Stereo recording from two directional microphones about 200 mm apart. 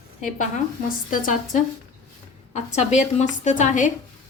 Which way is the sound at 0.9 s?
45° left (ahead or behind).